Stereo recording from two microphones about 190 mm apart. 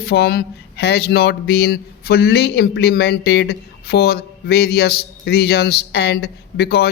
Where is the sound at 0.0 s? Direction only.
55° left (ahead or behind).